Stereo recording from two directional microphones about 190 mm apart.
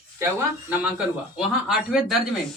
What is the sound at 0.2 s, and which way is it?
A man's voice, 10° right (ahead or behind).